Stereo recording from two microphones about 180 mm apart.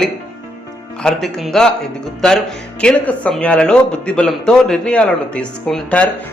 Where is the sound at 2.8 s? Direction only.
5° left (ahead or behind).